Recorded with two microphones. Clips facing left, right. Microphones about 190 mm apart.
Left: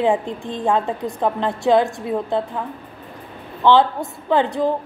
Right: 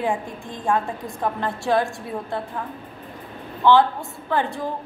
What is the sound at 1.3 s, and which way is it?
A woman's voice, 20° left (ahead or behind).